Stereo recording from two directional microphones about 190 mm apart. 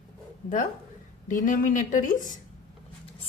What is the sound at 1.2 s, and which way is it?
Speech, 45° left (ahead or behind).